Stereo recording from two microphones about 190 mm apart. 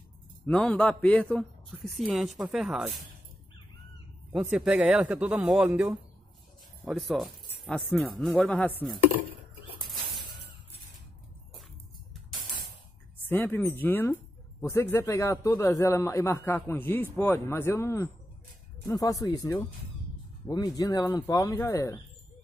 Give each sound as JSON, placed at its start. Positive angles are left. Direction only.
{"t": 0.5, "sound": "speech", "side_deg": 5}
{"t": 4.3, "sound": "speech", "side_deg": -5}
{"t": 9.8, "sound": "a sound", "side_deg": 0}
{"t": 13.2, "sound": "speech", "side_deg": 10}